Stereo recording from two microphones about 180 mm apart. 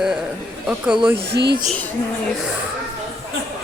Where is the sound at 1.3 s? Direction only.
70° right (ahead or behind).